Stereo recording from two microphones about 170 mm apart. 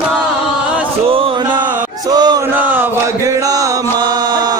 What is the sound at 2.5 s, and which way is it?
Chant, 10° right (ahead or behind).